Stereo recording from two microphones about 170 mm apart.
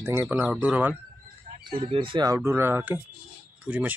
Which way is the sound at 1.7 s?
30° right (ahead or behind).